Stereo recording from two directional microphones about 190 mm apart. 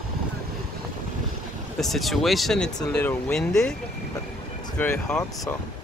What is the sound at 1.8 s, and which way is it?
Speech, centre (ahead or behind).